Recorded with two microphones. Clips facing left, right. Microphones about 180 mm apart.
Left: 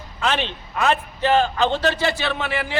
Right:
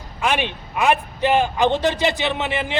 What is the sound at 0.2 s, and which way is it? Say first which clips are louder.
A man's voice: right 1 dB; 10° right (ahead or behind).